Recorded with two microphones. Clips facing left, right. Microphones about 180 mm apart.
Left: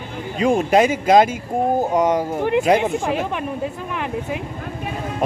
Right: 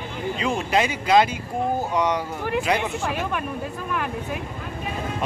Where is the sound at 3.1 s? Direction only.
25° left (ahead or behind).